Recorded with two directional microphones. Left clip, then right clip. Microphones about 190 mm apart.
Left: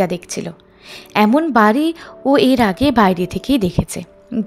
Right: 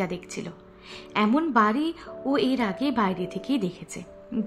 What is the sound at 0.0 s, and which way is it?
A woman's voice, 40° left (ahead or behind).